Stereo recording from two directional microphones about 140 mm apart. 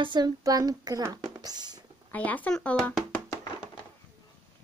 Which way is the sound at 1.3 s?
30° right (ahead or behind).